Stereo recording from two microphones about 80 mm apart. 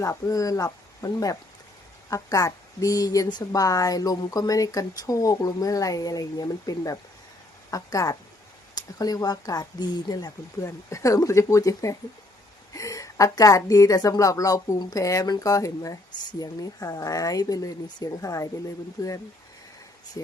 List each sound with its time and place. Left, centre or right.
0.0 s speech: left
10.6 s speech: left
18.2 s speech: left
19.0 s speech: left
20.2 s speech: left